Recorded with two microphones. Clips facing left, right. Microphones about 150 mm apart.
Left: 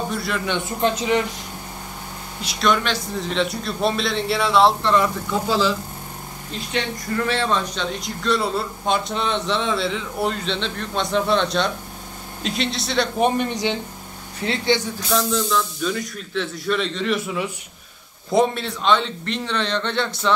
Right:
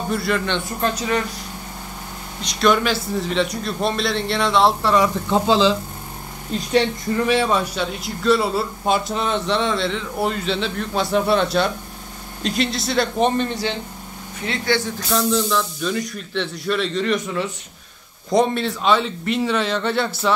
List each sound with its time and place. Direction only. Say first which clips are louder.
0.1 s speech: right 4 dB; centre (ahead or behind)
0.7 s speech: left 3 dB; 20° left (ahead or behind)
2.4 s speech: right 3 dB; centre (ahead or behind)
5.3 s speech: right 5 dB; 20° right (ahead or behind)
7.2 s speech: right 3 dB; 10° right (ahead or behind)
13.2 s a man's voice: left 2 dB; 15° left (ahead or behind)
14.4 s speech: left 2 dB; 30° left (ahead or behind)
15.0 s speech: right 1 dB; centre (ahead or behind)